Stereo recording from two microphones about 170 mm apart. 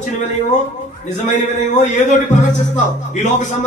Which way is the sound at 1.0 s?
45° left (ahead or behind).